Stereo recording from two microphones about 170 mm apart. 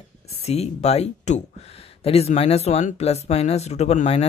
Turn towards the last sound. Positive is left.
turn(degrees=40)  # may be behind; listen again after turning